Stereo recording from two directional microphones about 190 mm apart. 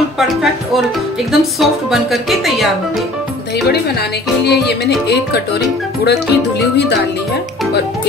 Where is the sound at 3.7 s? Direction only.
60° left (ahead or behind).